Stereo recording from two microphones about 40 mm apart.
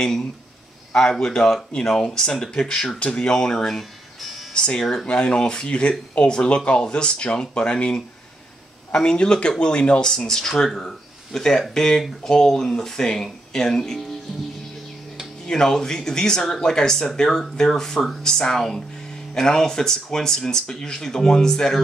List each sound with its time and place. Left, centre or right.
0.0 s speech: centre
3.0 s speech: left
8.9 s speech: left
15.4 s speech: centre